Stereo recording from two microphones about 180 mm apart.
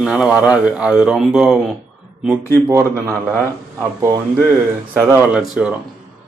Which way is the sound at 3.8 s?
15° right (ahead or behind).